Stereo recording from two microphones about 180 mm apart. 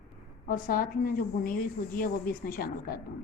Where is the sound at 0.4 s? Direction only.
50° left (ahead or behind).